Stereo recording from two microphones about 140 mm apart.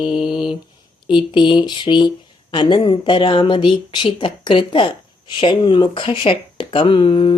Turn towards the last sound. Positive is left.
turn(degrees=40)  # may be behind; listen again after turning